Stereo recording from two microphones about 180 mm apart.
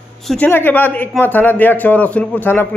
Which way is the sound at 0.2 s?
Centre (ahead or behind).